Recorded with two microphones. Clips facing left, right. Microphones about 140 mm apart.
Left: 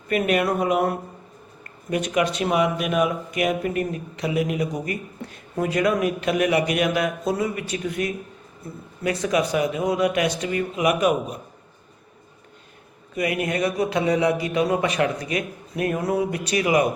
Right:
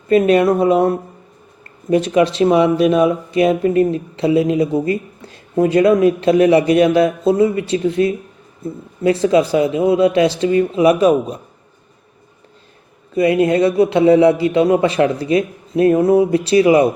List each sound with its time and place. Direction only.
0.1 s speech: 30° right (ahead or behind)
13.1 s speech: 30° right (ahead or behind)